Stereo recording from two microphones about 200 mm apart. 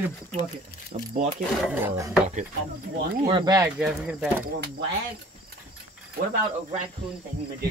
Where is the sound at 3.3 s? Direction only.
20° right (ahead or behind).